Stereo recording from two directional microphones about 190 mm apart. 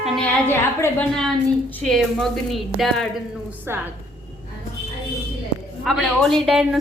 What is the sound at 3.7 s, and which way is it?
Speech, 10° right (ahead or behind).